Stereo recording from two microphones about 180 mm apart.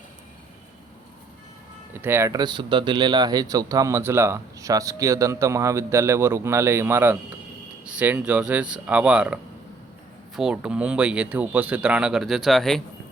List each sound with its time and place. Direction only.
1.9 s speech: 15° right (ahead or behind)